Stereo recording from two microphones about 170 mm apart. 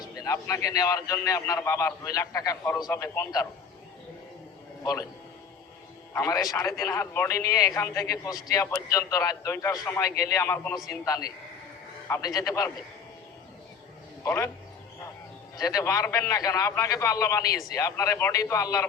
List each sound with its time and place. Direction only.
0.0 s a man's voice: 20° left (ahead or behind)
4.8 s a man's voice: 15° left (ahead or behind)
6.1 s a man's voice: 20° left (ahead or behind)
14.3 s speech: 15° left (ahead or behind)
15.5 s a man's voice: 20° left (ahead or behind)